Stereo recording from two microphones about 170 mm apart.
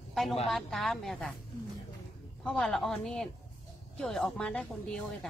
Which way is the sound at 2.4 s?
5° left (ahead or behind).